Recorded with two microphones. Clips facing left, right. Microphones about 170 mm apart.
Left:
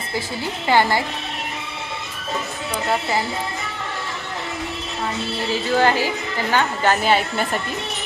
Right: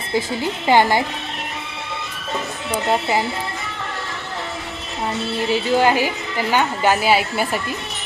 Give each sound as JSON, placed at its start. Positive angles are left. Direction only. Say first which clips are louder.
{"t": 0.7, "sound": "a woman's voice", "louder": "right 2 dB", "side_deg": -15}
{"t": 5.5, "sound": "a woman's voice", "louder": "right 2 dB", "side_deg": -15}